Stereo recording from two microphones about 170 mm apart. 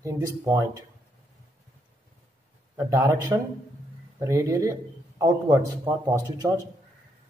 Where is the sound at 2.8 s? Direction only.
20° right (ahead or behind).